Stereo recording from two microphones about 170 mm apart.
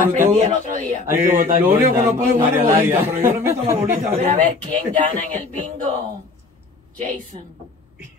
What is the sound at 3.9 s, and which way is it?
Speech, 50° right (ahead or behind).